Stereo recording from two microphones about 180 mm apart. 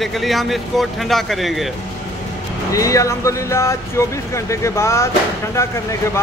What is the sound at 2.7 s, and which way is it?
Speech, 20° left (ahead or behind).